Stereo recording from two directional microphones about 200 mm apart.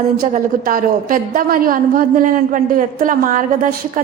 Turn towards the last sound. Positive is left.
turn(degrees=-40)  # may be behind; listen again after turning